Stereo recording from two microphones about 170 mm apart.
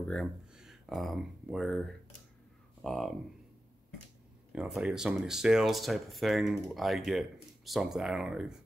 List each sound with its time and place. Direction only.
0.0 s speech: 5° left (ahead or behind)
4.5 s speech: 5° right (ahead or behind)